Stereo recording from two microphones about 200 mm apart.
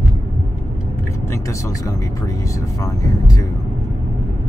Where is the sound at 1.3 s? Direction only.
15° left (ahead or behind).